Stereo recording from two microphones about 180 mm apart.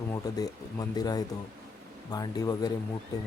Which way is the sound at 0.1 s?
20° left (ahead or behind).